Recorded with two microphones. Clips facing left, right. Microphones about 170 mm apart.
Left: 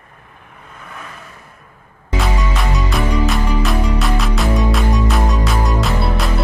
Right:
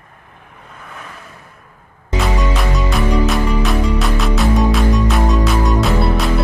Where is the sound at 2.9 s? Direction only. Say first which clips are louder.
Right 2 dB; centre (ahead or behind).